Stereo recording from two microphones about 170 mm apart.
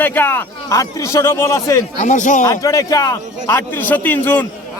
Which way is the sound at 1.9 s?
45° left (ahead or behind).